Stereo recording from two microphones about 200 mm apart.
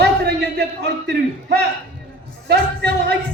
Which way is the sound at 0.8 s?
55° right (ahead or behind).